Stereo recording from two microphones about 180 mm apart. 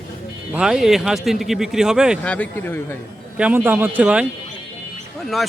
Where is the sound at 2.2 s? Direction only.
5° left (ahead or behind).